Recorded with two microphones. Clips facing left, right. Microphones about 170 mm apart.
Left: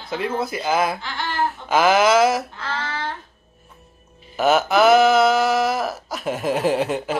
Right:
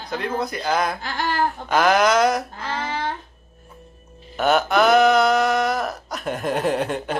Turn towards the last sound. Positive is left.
turn(degrees=0)  # may be behind; listen again after turning